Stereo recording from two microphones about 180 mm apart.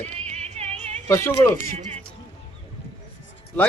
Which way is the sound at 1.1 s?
15° left (ahead or behind).